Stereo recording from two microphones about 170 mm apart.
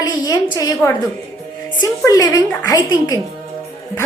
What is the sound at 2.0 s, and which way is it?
A woman's voice, 20° left (ahead or behind).